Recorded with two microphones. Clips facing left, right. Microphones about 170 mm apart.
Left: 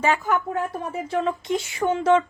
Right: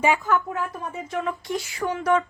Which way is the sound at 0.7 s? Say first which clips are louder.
Left 4 dB; 30° left (ahead or behind).